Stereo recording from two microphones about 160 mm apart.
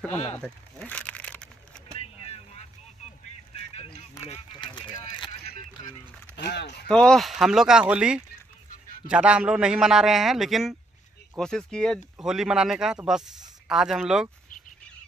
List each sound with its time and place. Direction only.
0.1 s speech: 45° left (ahead or behind)
0.4 s crumpling: 10° left (ahead or behind)
2.0 s vehicle: 40° left (ahead or behind)
3.5 s a sound: 40° left (ahead or behind)
4.6 s a sound: 30° left (ahead or behind)
6.3 s speech: 90° left
6.9 s speech: 5° left (ahead or behind)